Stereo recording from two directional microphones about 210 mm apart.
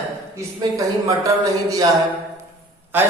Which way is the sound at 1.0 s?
15° right (ahead or behind).